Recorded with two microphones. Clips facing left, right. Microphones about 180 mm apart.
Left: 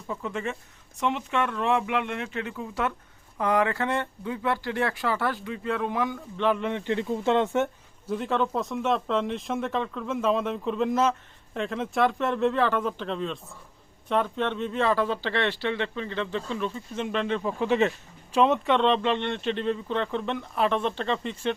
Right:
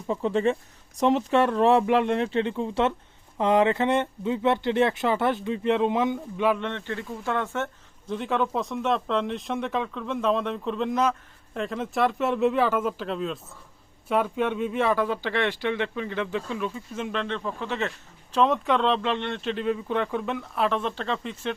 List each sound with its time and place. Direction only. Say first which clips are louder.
0.1 s speech: right 8 dB; 30° right (ahead or behind)
6.6 s speech: left 4 dB; 10° left (ahead or behind)
8.0 s speech: even; 5° left (ahead or behind)
18.3 s speech: left 1 dB; 5° left (ahead or behind)